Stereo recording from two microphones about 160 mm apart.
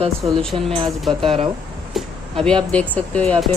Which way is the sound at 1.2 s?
35° right (ahead or behind).